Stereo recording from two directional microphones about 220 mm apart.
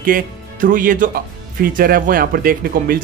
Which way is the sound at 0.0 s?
40° right (ahead or behind).